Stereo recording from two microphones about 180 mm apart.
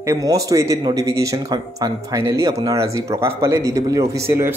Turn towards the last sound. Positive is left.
turn(degrees=-20)  # may be behind; listen again after turning